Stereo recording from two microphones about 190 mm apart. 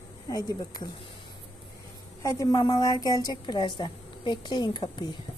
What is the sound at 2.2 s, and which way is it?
A woman's voice, 15° left (ahead or behind).